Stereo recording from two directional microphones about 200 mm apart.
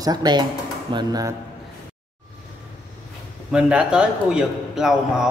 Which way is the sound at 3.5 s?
5° right (ahead or behind).